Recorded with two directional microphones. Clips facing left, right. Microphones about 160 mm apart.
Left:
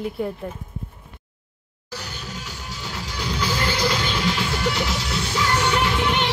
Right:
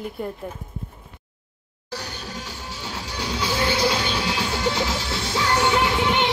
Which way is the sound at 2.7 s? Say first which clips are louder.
Even; 25° right (ahead or behind).